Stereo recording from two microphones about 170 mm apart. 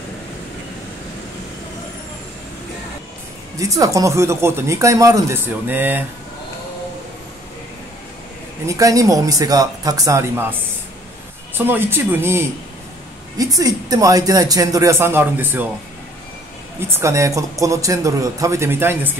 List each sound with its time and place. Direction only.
3.5 s speech: 20° right (ahead or behind)
8.6 s speech: 20° right (ahead or behind)
11.5 s speech: 10° right (ahead or behind)
16.9 s speech: 15° right (ahead or behind)